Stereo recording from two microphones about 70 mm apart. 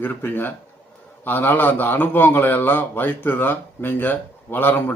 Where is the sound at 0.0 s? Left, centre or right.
Left.